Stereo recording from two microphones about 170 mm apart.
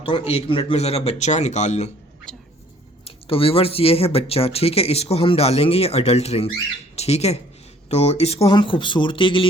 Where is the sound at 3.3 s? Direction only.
35° left (ahead or behind).